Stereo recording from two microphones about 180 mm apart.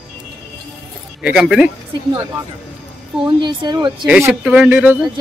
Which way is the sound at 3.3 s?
25° right (ahead or behind).